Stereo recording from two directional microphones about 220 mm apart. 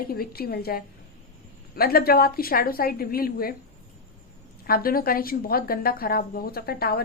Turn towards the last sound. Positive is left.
turn(degrees=45)  # may be behind; listen again after turning